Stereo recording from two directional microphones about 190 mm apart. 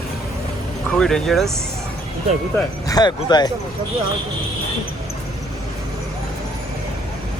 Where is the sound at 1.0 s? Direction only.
Centre (ahead or behind).